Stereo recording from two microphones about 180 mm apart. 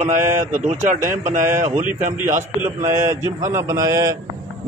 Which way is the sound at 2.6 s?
15° right (ahead or behind).